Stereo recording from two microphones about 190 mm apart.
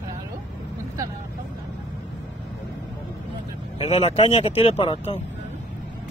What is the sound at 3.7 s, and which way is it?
Speech, 30° left (ahead or behind).